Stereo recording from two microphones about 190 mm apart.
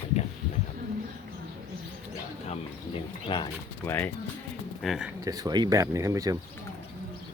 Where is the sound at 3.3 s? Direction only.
25° left (ahead or behind).